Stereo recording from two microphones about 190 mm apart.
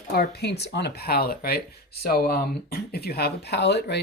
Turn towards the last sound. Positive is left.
turn(degrees=60)  # may be behind; listen again after turning